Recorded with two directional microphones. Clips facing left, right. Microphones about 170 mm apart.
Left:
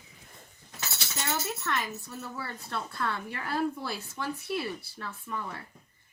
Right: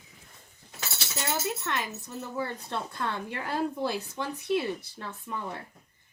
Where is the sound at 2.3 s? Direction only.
20° right (ahead or behind).